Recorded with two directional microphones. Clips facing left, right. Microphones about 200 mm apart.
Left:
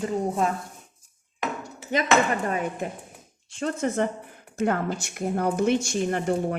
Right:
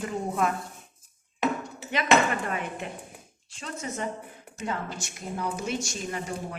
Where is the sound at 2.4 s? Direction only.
40° left (ahead or behind).